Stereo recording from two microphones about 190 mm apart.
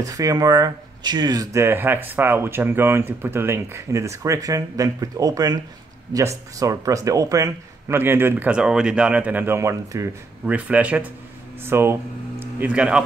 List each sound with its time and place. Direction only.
0.0 s speech: 20° right (ahead or behind)